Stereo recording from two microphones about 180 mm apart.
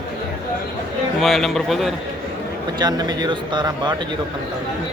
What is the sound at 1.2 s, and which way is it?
Speech, centre (ahead or behind).